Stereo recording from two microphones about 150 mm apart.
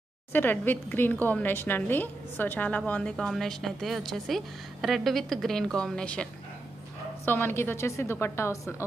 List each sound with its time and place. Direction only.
0.3 s a woman's voice: 15° left (ahead or behind)
7.2 s a woman's voice: 15° left (ahead or behind)